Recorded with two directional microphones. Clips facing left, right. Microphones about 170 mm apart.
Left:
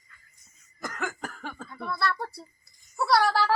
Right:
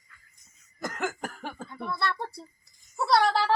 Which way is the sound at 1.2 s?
15° right (ahead or behind).